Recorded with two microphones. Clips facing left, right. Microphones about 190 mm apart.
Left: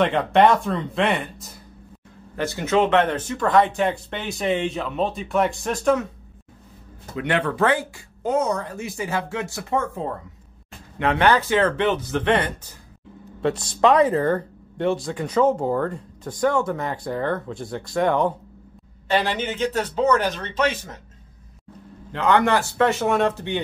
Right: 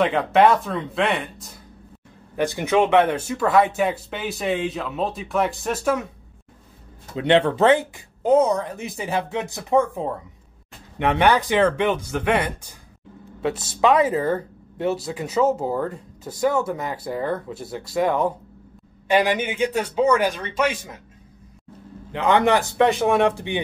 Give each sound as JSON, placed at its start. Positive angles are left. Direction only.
{"t": 0.0, "sound": "speech", "side_deg": 0}
{"t": 2.3, "sound": "speech", "side_deg": -15}
{"t": 7.2, "sound": "a man's voice", "side_deg": -25}
{"t": 22.1, "sound": "a man's voice", "side_deg": -15}